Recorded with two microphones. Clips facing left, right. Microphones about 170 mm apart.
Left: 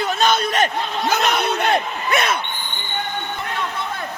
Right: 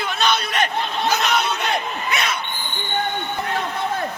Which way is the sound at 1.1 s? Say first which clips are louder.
Left 2 dB; 55° left (ahead or behind).